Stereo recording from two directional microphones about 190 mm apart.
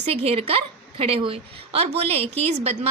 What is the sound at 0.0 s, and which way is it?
A woman's voice, 30° right (ahead or behind).